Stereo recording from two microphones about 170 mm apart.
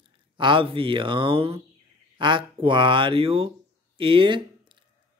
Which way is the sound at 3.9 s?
30° right (ahead or behind).